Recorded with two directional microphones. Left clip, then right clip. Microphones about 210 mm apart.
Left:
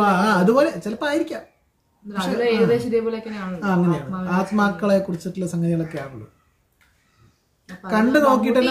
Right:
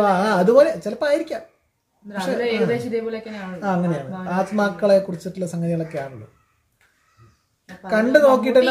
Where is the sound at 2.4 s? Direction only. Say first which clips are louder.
Left 4 dB; 15° left (ahead or behind).